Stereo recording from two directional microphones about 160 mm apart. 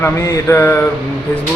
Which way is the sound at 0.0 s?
15° left (ahead or behind).